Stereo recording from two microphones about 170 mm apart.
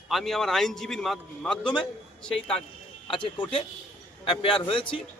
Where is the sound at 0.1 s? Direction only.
Centre (ahead or behind).